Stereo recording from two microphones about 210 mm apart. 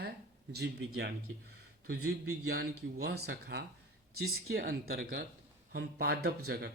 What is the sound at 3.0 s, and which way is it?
Speech, 50° right (ahead or behind).